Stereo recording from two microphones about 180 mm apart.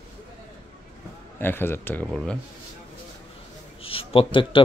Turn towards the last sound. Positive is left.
turn(degrees=30)  # may be behind; listen again after turning